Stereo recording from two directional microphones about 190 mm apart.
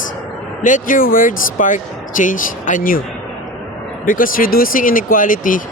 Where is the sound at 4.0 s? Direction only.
45° left (ahead or behind).